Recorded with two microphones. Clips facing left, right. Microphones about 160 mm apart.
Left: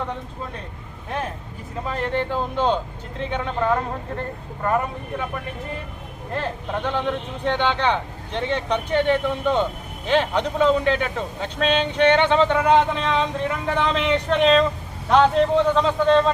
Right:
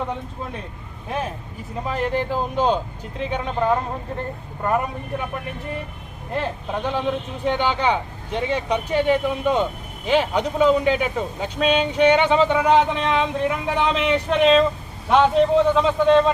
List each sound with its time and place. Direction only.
1.9 s speech: 10° right (ahead or behind)
6.8 s a man's voice: 10° right (ahead or behind)